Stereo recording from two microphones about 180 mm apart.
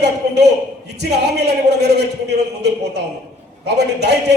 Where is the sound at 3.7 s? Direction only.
70° right (ahead or behind).